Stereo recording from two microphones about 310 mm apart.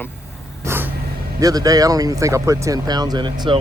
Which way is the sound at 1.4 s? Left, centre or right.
Centre.